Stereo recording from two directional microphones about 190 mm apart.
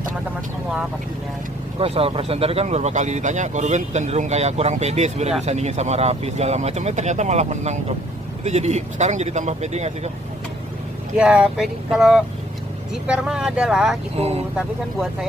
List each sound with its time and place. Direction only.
1.8 s speech: 30° right (ahead or behind)
11.1 s speech: 5° right (ahead or behind)
14.1 s speech: 30° right (ahead or behind)